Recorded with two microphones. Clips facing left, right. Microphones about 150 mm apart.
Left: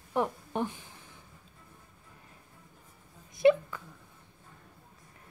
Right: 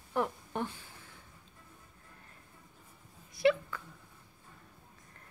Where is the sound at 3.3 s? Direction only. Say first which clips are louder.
Left 5 dB; 20° left (ahead or behind).